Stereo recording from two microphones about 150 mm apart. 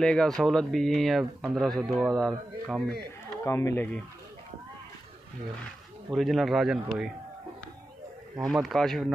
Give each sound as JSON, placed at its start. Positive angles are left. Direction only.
{"t": 0.0, "sound": "speech", "side_deg": 5}
{"t": 3.4, "sound": "speech", "side_deg": 20}
{"t": 6.0, "sound": "speech", "side_deg": 0}
{"t": 8.4, "sound": "speech", "side_deg": 0}